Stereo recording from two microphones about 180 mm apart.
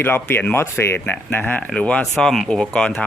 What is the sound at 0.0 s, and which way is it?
Speech, 10° left (ahead or behind).